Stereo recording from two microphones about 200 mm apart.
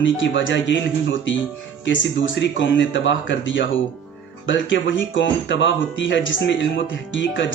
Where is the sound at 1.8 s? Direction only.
65° left (ahead or behind).